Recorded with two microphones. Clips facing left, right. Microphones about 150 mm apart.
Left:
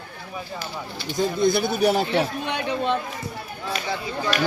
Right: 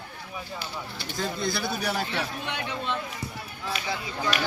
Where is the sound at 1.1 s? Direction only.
20° left (ahead or behind).